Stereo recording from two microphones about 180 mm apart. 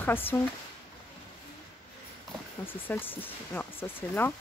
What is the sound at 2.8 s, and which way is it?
Speech, 10° left (ahead or behind).